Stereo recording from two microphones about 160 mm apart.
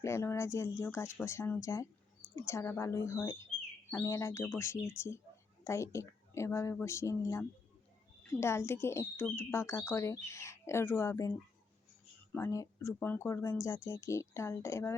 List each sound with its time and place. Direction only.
0.0 s speech: 15° left (ahead or behind)